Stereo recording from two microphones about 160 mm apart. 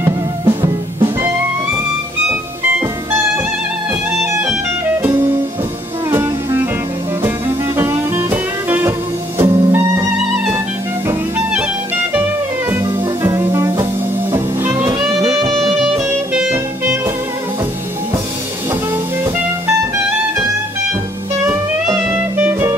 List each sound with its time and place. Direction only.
0.5 s music: 35° right (ahead or behind)
6.0 s music: 15° right (ahead or behind)
13.2 s music: 20° right (ahead or behind)
15.5 s music: centre (ahead or behind)
16.3 s music: 15° right (ahead or behind)
22.1 s music: 15° right (ahead or behind)